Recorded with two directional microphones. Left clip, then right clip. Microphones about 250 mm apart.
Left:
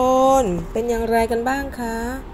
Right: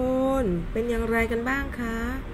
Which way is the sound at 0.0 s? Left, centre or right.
Left.